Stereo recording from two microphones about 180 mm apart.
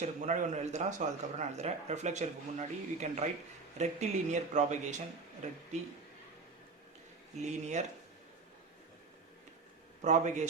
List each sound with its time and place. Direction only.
0.0 s speech: 40° right (ahead or behind)
7.4 s speech: 40° right (ahead or behind)
10.0 s speech: 40° right (ahead or behind)